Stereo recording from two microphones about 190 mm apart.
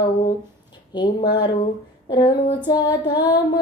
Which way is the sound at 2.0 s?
20° left (ahead or behind).